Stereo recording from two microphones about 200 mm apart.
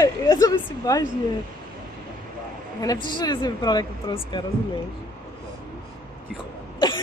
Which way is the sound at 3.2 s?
20° left (ahead or behind).